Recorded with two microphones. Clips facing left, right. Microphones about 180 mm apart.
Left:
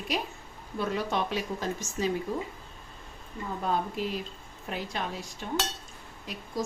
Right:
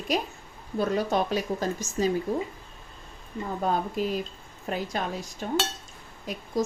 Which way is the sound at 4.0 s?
45° right (ahead or behind).